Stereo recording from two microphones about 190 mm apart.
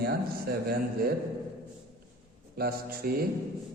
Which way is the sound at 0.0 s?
55° right (ahead or behind).